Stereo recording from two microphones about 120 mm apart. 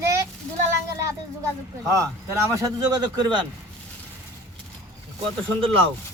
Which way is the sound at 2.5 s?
25° right (ahead or behind).